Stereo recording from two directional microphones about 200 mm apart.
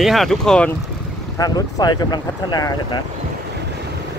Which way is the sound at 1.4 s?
20° left (ahead or behind).